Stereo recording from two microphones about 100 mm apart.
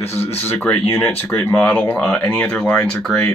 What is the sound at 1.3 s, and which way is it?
Speech, 20° left (ahead or behind).